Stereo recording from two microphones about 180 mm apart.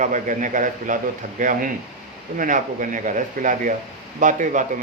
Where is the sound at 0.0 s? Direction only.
45° right (ahead or behind).